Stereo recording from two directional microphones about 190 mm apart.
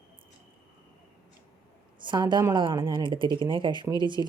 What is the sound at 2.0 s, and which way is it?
A woman's voice, 25° right (ahead or behind).